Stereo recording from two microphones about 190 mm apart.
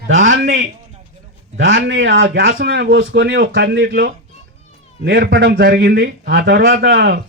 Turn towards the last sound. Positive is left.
turn(degrees=-55)  # may be behind; listen again after turning